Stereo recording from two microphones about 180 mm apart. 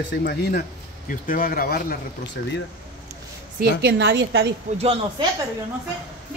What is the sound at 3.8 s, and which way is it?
Speech, 80° right.